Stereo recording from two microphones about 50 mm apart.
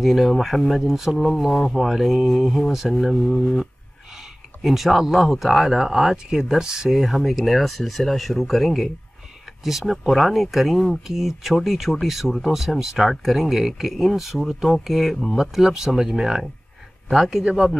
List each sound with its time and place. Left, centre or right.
0.0 s speech: centre